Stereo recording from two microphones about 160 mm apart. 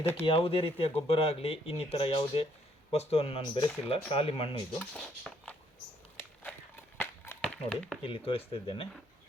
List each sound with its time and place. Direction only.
0.3 s speech: 35° left (ahead or behind)
4.9 s speech: 5° left (ahead or behind)
7.4 s speech: centre (ahead or behind)
8.0 s speech: 35° left (ahead or behind)